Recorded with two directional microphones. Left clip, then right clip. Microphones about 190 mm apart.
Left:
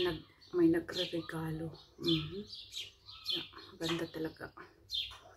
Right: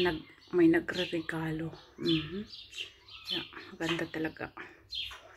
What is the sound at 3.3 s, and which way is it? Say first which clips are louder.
Speech: right 2 dB; 35° right (ahead or behind).